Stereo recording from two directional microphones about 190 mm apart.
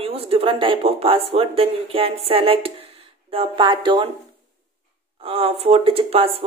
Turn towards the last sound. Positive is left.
turn(degrees=-30)  # may be behind; listen again after turning